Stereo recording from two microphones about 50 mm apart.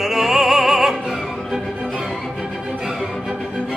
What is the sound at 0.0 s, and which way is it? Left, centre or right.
Music, centre.